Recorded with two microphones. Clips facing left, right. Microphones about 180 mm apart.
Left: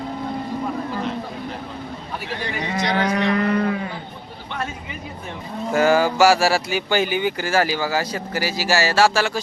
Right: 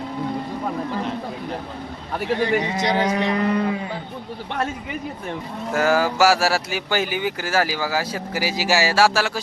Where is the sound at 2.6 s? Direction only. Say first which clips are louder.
Right 1 dB; 20° right (ahead or behind).